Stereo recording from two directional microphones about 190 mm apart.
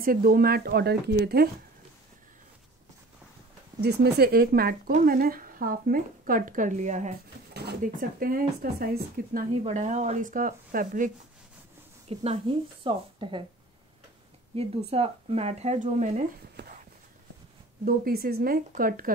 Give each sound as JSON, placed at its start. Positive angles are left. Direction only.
{"t": 0.0, "sound": "speech", "side_deg": -50}
{"t": 3.8, "sound": "speech", "side_deg": -60}
{"t": 12.1, "sound": "a woman's voice", "side_deg": -30}
{"t": 14.5, "sound": "speech", "side_deg": -30}
{"t": 16.6, "sound": "walk", "side_deg": -60}
{"t": 17.8, "sound": "speech", "side_deg": -50}